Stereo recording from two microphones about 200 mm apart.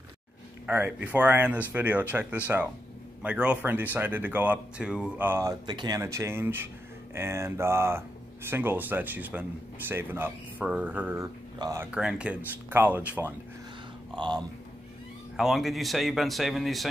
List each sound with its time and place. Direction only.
0.7 s speech: 10° right (ahead or behind)
14.1 s speech: 25° right (ahead or behind)
15.3 s speech: centre (ahead or behind)